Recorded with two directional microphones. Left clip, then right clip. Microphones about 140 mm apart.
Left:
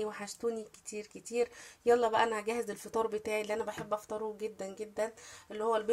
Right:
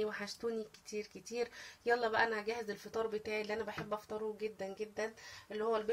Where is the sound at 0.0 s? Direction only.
30° left (ahead or behind).